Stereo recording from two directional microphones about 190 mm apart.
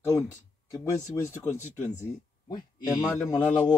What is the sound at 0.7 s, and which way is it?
A man's voice, 15° left (ahead or behind).